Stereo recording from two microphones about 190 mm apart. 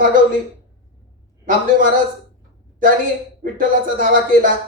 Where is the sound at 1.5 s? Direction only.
45° right (ahead or behind).